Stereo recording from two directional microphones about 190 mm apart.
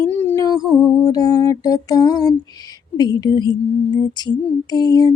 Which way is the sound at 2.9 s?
20° left (ahead or behind).